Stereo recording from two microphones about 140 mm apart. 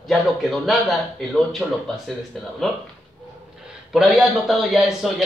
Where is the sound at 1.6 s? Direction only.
5° right (ahead or behind).